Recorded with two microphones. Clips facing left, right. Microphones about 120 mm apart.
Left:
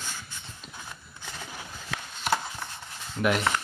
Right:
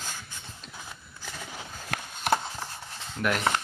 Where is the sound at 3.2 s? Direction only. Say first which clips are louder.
Left 3 dB; 10° left (ahead or behind).